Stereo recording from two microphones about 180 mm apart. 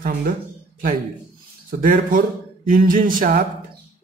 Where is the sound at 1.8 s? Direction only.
50° right (ahead or behind).